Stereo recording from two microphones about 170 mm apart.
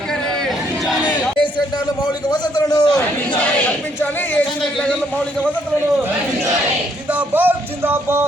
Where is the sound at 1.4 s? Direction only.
25° left (ahead or behind).